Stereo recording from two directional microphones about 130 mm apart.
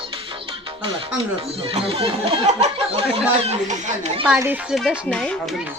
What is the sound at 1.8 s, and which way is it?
Speech, 45° right (ahead or behind).